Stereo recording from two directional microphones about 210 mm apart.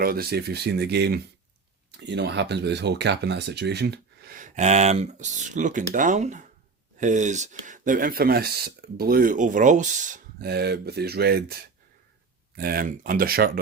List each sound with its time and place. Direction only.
0.0 s speech: 45° right (ahead or behind)
12.5 s speech: 45° right (ahead or behind)